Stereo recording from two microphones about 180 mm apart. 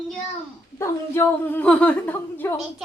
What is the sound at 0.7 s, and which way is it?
A woman's voice, 15° left (ahead or behind).